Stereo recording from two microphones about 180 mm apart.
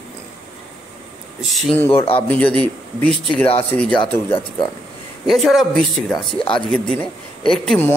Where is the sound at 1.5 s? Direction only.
10° left (ahead or behind).